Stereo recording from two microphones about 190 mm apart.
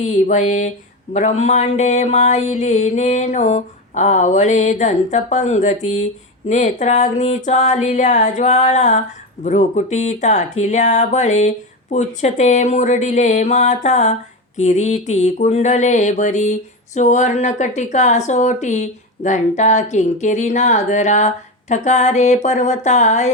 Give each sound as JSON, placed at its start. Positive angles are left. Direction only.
{"t": 0.0, "sound": "speech", "side_deg": 40}